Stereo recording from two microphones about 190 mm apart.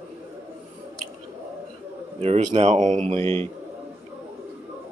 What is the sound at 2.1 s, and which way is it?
Speech, 35° right (ahead or behind).